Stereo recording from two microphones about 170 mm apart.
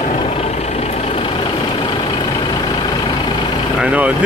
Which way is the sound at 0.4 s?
35° left (ahead or behind).